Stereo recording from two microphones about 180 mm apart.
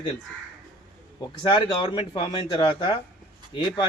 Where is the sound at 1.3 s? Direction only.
25° left (ahead or behind).